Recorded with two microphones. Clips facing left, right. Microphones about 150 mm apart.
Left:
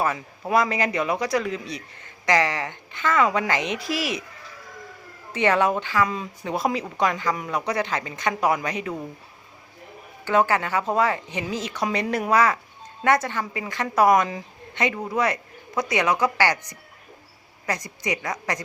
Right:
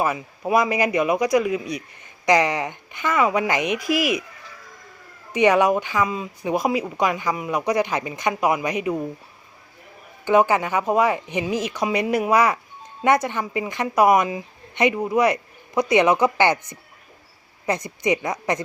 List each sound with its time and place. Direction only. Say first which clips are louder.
0.0 s a man's voice: right 2 dB; 10° right (ahead or behind)
5.3 s a man's voice: right 4 dB; 15° right (ahead or behind)
10.2 s a man's voice: right 3 dB; 15° right (ahead or behind)
17.8 s a woman's voice: right 6 dB; 20° right (ahead or behind)